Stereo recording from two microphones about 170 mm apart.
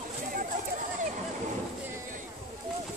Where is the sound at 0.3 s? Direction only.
55° right (ahead or behind).